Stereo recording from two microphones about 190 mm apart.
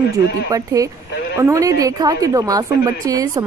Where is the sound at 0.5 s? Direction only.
15° right (ahead or behind).